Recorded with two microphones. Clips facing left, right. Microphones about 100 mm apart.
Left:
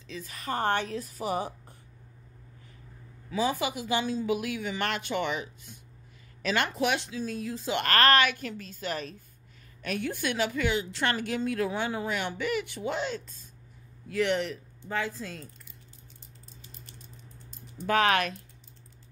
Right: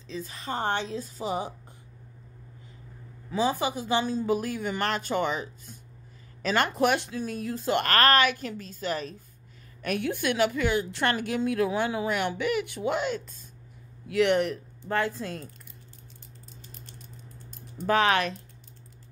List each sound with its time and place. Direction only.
0.0 s a woman's voice: 30° right (ahead or behind)
3.3 s a woman's voice: 30° right (ahead or behind)
9.8 s a woman's voice: 55° right (ahead or behind)
17.7 s speech: 35° right (ahead or behind)